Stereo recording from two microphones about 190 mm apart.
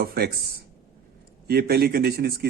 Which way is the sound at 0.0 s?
50° right (ahead or behind).